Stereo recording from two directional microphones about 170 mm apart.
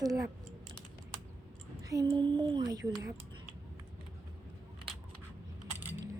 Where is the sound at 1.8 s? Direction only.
20° right (ahead or behind).